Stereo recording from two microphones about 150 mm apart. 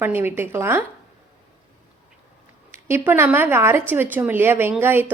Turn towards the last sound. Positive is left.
turn(degrees=-15)  # may be behind; listen again after turning